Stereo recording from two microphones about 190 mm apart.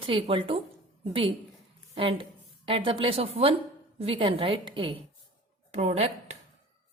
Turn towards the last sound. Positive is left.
turn(degrees=-35)  # may be behind; listen again after turning